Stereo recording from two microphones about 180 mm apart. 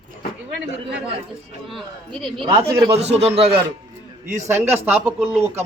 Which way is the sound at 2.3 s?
30° right (ahead or behind).